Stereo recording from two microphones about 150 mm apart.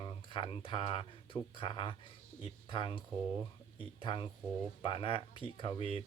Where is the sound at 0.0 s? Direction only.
35° left (ahead or behind).